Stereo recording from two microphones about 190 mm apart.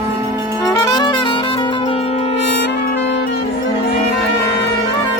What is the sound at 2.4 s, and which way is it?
Music, 60° left (ahead or behind).